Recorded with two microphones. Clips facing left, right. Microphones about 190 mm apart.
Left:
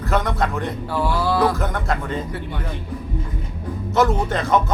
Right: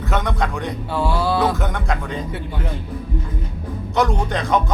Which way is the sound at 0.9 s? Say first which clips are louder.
Right 1 dB; 25° right (ahead or behind).